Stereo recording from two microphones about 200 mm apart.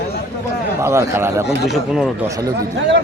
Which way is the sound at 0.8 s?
15° right (ahead or behind).